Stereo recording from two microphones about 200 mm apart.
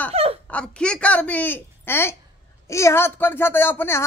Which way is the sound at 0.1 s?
30° right (ahead or behind).